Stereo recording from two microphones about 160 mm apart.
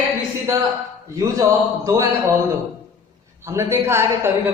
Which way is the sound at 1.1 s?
20° right (ahead or behind).